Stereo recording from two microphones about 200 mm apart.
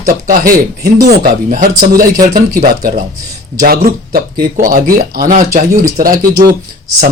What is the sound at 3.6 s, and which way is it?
Speech, 50° right (ahead or behind).